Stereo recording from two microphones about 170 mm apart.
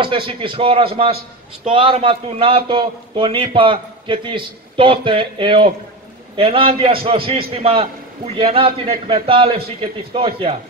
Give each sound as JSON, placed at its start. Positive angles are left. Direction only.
{"t": 0.0, "sound": "a man's voice", "side_deg": -30}